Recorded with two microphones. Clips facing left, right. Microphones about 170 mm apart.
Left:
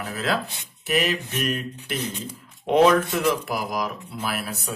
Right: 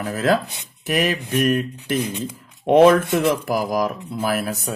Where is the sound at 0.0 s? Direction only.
45° right (ahead or behind).